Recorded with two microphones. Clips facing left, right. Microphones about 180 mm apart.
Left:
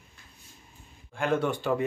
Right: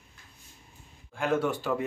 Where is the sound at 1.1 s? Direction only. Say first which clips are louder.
Even; 5° right (ahead or behind).